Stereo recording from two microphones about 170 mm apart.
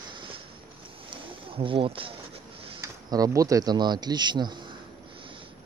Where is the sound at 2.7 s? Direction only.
20° right (ahead or behind).